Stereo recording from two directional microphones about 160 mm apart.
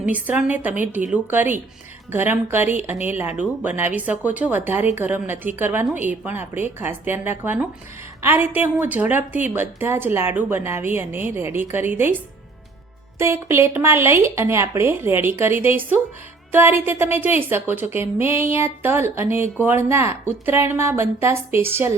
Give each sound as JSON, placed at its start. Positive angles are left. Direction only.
{"t": 0.1, "sound": "a woman's voice", "side_deg": -10}